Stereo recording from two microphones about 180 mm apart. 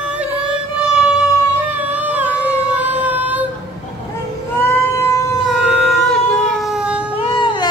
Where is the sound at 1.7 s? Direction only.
10° right (ahead or behind).